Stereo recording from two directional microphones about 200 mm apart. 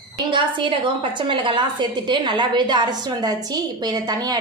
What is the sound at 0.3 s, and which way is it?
A woman's voice, 25° right (ahead or behind).